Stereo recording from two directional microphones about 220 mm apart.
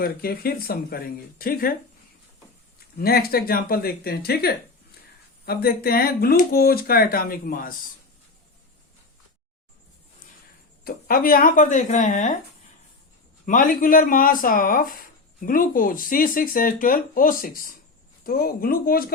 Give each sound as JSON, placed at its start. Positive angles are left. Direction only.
{"t": 0.0, "sound": "speech", "side_deg": 45}
{"t": 3.0, "sound": "speech", "side_deg": 45}
{"t": 10.8, "sound": "speech", "side_deg": 40}
{"t": 13.4, "sound": "speech", "side_deg": 35}